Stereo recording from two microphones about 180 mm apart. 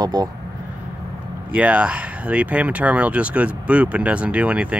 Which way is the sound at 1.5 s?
5° right (ahead or behind).